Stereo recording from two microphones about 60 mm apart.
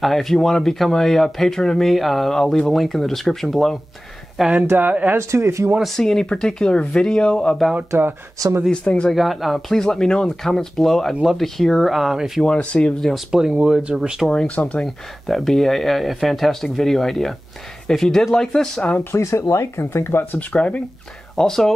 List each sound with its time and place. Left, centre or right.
0.0 s speech: centre
4.6 s speech: right
5.1 s speech: right
5.9 s speech: centre
8.7 s speech: centre
9.1 s speech: centre
9.8 s speech: centre
12.4 s speech: centre
13.1 s speech: centre
14.5 s speech: left
15.2 s speech: centre
19.1 s speech: left
20.3 s speech: left
21.4 s speech: centre